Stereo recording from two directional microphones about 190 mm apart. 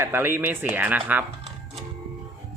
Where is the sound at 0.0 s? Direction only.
10° right (ahead or behind).